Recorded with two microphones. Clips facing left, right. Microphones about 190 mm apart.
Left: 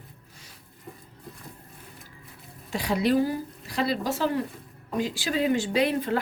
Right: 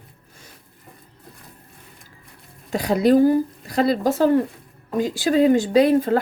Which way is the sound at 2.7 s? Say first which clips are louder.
Right 7 dB; 45° right (ahead or behind).